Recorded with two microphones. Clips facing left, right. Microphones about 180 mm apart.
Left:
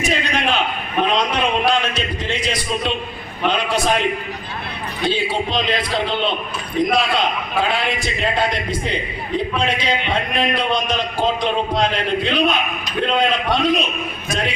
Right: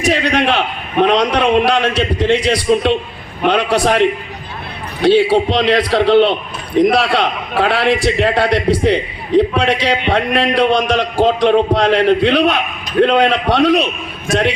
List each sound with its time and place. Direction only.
0.0 s a sound: 70° right (ahead or behind)
1.0 s a man's voice: 75° right (ahead or behind)
5.0 s a man's voice: 75° right (ahead or behind)